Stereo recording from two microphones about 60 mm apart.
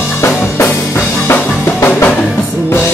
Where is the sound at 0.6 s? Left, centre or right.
Left.